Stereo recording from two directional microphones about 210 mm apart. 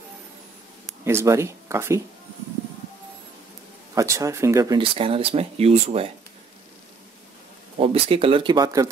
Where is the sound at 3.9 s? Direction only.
15° right (ahead or behind); by 6.1 s 30° right (ahead or behind).